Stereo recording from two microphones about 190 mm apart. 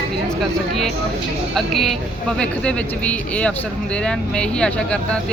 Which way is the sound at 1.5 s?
Centre (ahead or behind).